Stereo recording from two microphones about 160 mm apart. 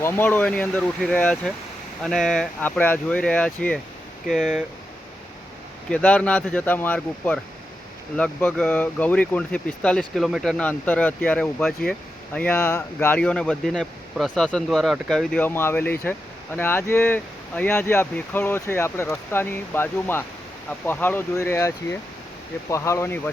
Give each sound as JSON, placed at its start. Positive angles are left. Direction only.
{"t": 0.0, "sound": "speech", "side_deg": 10}
{"t": 5.9, "sound": "speech", "side_deg": 5}
{"t": 22.7, "sound": "speech", "side_deg": 15}